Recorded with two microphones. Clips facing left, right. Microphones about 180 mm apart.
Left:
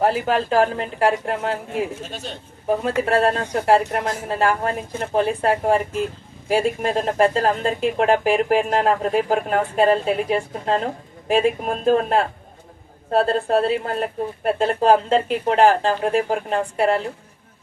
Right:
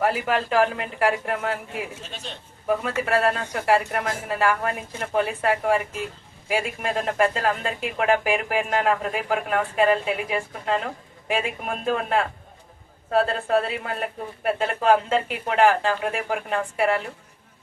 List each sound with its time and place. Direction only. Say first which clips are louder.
0.0 s speech: left 4 dB; 30° left (ahead or behind)
1.7 s speech: left 7 dB; 45° left (ahead or behind)
2.8 s speech: left 5 dB; 30° left (ahead or behind)